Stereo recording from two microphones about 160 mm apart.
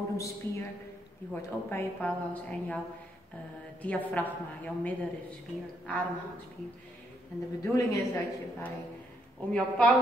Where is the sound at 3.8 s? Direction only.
10° left (ahead or behind).